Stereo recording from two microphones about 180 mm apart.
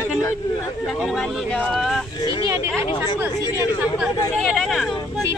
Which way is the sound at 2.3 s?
15° right (ahead or behind).